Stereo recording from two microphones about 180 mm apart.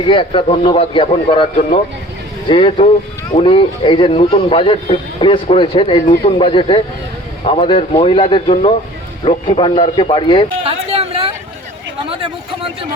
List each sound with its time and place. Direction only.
0.1 s speech: 30° left (ahead or behind)
2.5 s speech: 30° left (ahead or behind)
10.6 s a sound: 30° right (ahead or behind)